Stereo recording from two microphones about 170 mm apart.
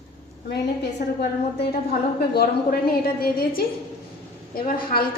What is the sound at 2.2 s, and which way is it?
A woman's voice, 65° left (ahead or behind).